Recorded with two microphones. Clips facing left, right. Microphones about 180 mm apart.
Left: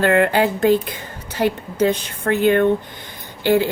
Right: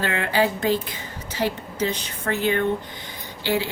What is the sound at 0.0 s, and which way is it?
A woman's voice, 55° left (ahead or behind).